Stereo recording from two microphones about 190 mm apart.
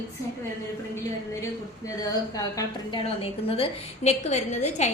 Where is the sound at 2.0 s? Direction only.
20° left (ahead or behind).